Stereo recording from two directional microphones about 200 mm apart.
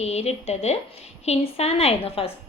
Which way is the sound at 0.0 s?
30° left (ahead or behind).